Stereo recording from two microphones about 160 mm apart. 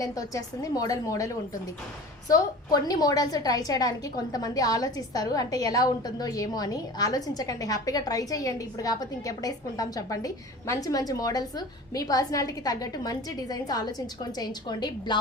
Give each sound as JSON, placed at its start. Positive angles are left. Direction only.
{"t": 0.0, "sound": "a woman's voice", "side_deg": 20}